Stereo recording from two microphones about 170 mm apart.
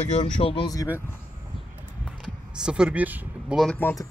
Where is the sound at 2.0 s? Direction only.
5° right (ahead or behind).